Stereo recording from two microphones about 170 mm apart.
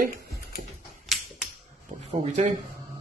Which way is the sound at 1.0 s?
Centre (ahead or behind).